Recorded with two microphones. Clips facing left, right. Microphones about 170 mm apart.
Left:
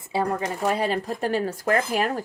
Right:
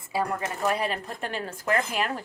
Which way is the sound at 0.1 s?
30° left (ahead or behind).